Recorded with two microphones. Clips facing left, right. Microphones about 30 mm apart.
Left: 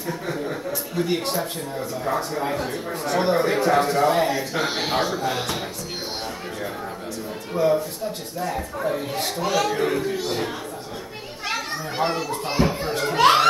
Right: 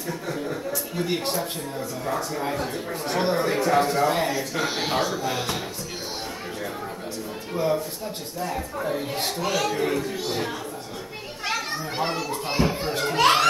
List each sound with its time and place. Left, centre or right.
0.0 s chuckle: centre
0.9 s a child's voice: centre
7.5 s a child's voice: centre
11.4 s children playing: centre
12.5 s a child's voice: centre
13.2 s speech: centre